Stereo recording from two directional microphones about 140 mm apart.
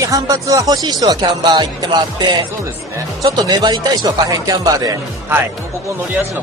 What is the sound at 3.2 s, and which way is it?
Speech, 25° right (ahead or behind).